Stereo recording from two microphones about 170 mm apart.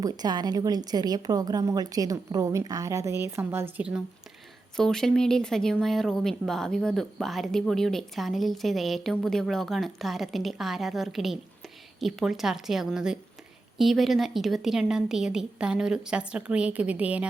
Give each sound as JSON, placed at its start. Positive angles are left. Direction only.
{"t": 0.0, "sound": "a woman's voice", "side_deg": -25}
{"t": 4.8, "sound": "speech", "side_deg": 5}